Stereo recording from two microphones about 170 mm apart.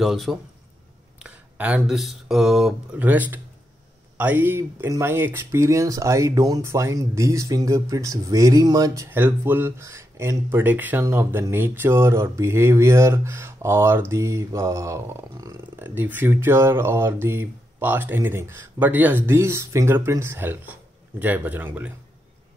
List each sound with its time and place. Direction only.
0.0 s a man's voice: centre (ahead or behind)